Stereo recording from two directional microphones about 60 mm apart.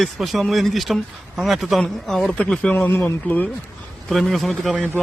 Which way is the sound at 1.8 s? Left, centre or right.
Centre.